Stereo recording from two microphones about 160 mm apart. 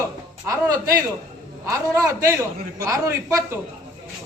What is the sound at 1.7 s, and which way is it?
A man's voice, 20° right (ahead or behind).